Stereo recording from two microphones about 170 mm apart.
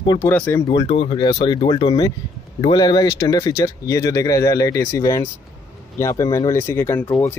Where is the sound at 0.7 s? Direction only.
30° left (ahead or behind).